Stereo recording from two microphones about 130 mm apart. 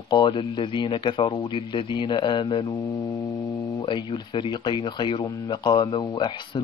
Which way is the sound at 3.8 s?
40° left (ahead or behind).